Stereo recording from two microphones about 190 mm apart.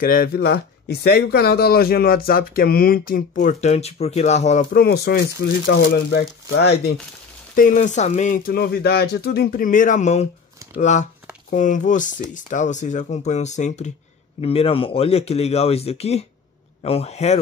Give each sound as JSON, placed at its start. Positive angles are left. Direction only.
{"t": 0.0, "sound": "speech", "side_deg": 50}
{"t": 4.7, "sound": "speech", "side_deg": 55}
{"t": 7.5, "sound": "speech", "side_deg": 45}